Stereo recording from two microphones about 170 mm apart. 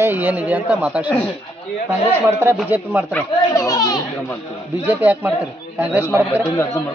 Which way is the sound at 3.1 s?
20° left (ahead or behind).